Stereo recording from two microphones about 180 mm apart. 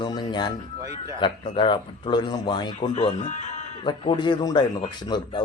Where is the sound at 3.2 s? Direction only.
45° left (ahead or behind).